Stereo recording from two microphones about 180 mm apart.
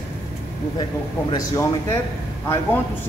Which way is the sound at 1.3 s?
20° left (ahead or behind).